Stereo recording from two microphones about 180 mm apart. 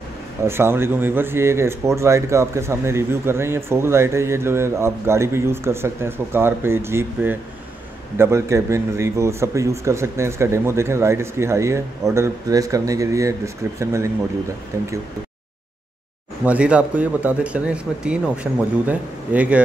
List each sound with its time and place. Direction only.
0.4 s speech: 15° right (ahead or behind)
16.4 s speech: 5° right (ahead or behind)